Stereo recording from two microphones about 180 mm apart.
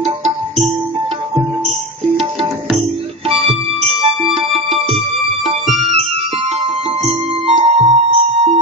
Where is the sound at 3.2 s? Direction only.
35° right (ahead or behind).